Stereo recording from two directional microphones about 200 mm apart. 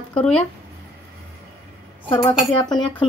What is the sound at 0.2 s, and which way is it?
Speech, 5° left (ahead or behind).